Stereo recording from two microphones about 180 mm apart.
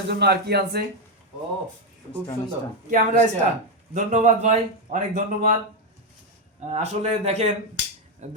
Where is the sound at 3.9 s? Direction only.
45° right (ahead or behind).